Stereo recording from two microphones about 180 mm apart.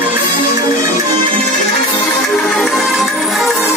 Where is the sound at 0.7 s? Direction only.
15° right (ahead or behind).